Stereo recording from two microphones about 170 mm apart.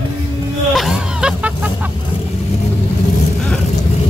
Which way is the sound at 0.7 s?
Centre (ahead or behind).